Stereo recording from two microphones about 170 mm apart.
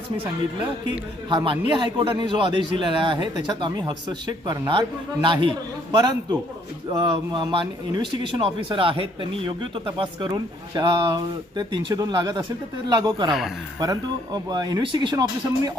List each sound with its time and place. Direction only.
1.3 s speech: 25° right (ahead or behind)